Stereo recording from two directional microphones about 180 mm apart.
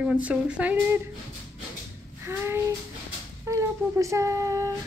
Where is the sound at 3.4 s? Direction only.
15° right (ahead or behind).